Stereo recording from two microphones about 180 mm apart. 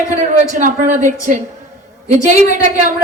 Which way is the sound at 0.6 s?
45° right (ahead or behind).